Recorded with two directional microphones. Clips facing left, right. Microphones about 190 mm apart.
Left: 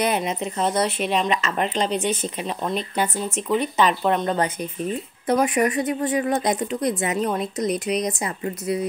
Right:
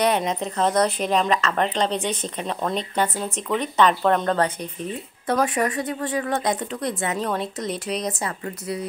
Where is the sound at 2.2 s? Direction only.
5° left (ahead or behind).